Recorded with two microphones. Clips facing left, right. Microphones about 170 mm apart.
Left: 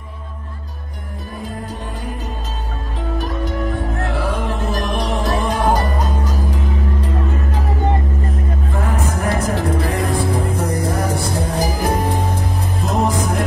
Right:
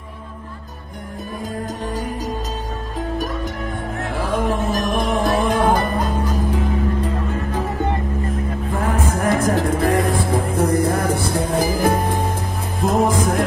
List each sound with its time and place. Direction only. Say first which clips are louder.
4.3 s music: right 2 dB; 45° right (ahead or behind)
9.2 s music: right 3 dB; 50° right (ahead or behind)